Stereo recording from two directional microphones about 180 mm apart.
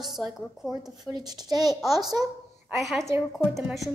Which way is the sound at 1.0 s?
20° right (ahead or behind).